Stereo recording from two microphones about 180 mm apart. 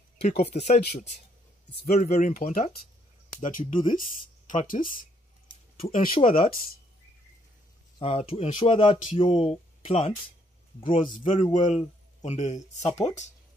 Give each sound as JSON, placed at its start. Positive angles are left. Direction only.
{"t": 0.2, "sound": "speech", "side_deg": 35}
{"t": 5.8, "sound": "speech", "side_deg": 35}
{"t": 8.0, "sound": "speech", "side_deg": 35}
{"t": 11.1, "sound": "speech", "side_deg": 45}